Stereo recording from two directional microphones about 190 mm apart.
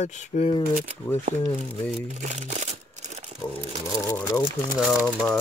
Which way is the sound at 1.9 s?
35° right (ahead or behind).